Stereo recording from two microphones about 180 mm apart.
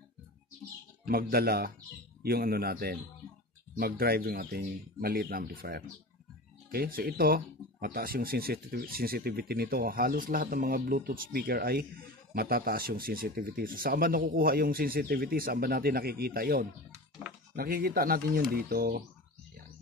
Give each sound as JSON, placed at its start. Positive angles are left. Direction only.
{"t": 1.0, "sound": "speech", "side_deg": -60}